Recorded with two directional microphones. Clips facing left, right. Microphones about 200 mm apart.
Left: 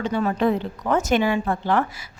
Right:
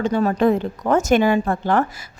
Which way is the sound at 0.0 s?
40° right (ahead or behind).